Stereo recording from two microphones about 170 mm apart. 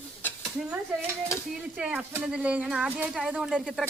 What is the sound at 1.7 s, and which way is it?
Speech, 5° right (ahead or behind).